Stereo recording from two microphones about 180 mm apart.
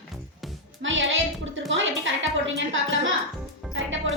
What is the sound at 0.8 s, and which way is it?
A woman's voice, 90° right.